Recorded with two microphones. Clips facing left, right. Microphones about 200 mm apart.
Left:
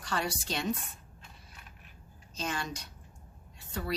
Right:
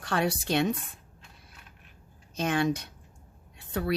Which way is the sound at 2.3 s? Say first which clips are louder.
Right 10 dB; 60° right (ahead or behind).